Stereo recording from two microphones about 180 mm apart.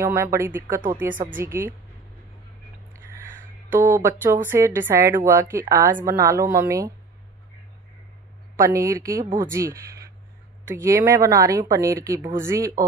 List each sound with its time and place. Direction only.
0.0 s speech: 15° right (ahead or behind)
3.7 s speech: 15° right (ahead or behind)
8.5 s speech: 15° right (ahead or behind)